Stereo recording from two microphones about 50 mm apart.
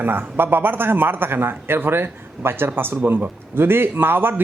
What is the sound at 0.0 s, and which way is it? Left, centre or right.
A man's voice, right.